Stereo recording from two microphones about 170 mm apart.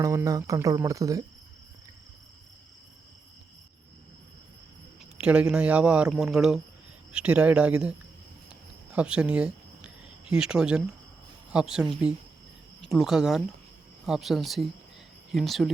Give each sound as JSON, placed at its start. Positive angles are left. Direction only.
{"t": 0.0, "sound": "speech", "side_deg": -20}
{"t": 5.2, "sound": "speech", "side_deg": -5}
{"t": 8.9, "sound": "cricket", "side_deg": -5}
{"t": 11.5, "sound": "speech", "side_deg": -5}